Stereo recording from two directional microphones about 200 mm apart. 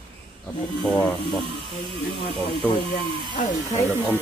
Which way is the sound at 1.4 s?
25° left (ahead or behind).